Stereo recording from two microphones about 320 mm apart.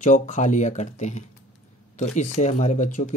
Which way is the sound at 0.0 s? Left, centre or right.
Left.